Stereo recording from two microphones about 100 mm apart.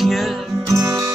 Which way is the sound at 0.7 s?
30° right (ahead or behind).